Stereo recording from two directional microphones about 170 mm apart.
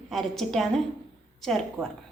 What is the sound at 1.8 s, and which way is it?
Speech, 15° right (ahead or behind).